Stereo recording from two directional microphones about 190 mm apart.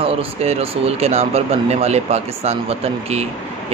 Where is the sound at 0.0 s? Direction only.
30° right (ahead or behind).